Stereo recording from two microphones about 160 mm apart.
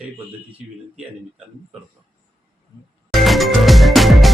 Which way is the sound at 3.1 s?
Centre (ahead or behind).